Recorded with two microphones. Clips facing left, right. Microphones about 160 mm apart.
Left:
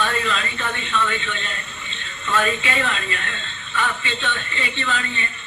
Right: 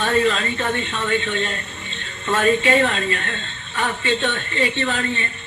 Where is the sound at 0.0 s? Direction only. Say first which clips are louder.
Right 5 dB; 40° right (ahead or behind).